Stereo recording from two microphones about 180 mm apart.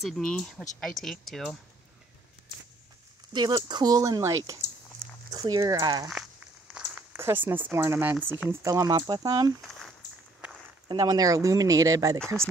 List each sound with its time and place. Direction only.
0.0 s speech: 5° left (ahead or behind)
3.3 s speech: 25° right (ahead or behind)
6.7 s speech: 5° right (ahead or behind)
9.7 s a sound: 5° left (ahead or behind)
10.9 s speech: 20° right (ahead or behind)